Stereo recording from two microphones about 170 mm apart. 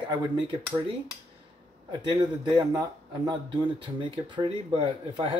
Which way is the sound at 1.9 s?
25° right (ahead or behind).